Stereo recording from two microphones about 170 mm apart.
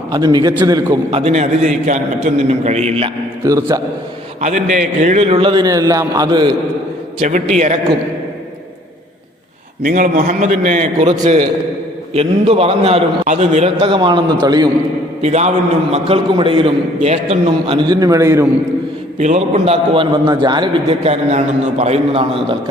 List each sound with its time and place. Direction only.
0.1 s a man's voice: 25° right (ahead or behind)
1.1 s a man's voice: 40° right (ahead or behind)
3.4 s a man's voice: 20° right (ahead or behind)
4.4 s a man's voice: 45° right (ahead or behind); by 6.5 s 25° right (ahead or behind)
7.2 s a man's voice: 45° right (ahead or behind)
9.8 s a man's voice: 50° right (ahead or behind)
12.1 s a man's voice: 35° right (ahead or behind)
15.2 s a man's voice: 40° right (ahead or behind)
17.7 s a man's voice: 20° right (ahead or behind)
19.2 s a man's voice: 40° right (ahead or behind)